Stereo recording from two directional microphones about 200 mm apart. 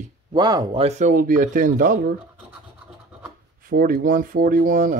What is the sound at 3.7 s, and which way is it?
Speech, 45° right (ahead or behind).